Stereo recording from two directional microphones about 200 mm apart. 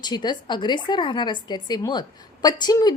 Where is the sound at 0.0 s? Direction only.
20° left (ahead or behind).